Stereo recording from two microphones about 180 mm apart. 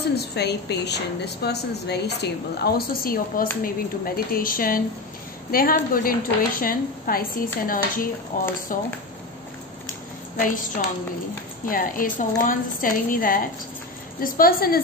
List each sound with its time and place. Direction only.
0.1 s a woman's voice: 65° left (ahead or behind); by 8.8 s 45° left (ahead or behind)
10.4 s a woman's voice: 50° left (ahead or behind)